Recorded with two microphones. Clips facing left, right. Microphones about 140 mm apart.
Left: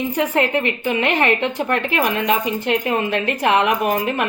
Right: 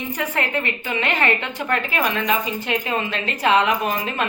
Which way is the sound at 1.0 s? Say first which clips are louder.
Left 3 dB; 60° left (ahead or behind).